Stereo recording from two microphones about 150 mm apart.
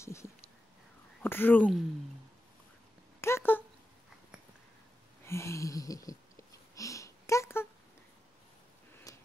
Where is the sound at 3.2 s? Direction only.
15° left (ahead or behind).